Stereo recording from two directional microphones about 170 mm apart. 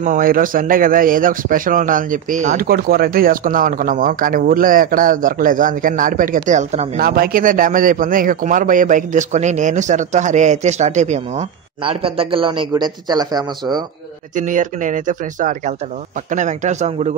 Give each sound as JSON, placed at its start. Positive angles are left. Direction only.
{"t": 0.0, "sound": "a man's voice", "side_deg": -55}
{"t": 7.0, "sound": "a man's voice", "side_deg": -60}
{"t": 14.3, "sound": "a man's voice", "side_deg": -50}